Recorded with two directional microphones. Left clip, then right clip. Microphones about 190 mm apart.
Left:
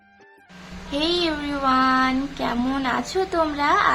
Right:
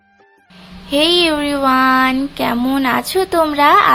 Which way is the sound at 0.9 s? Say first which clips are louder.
Right 10 dB; 30° right (ahead or behind).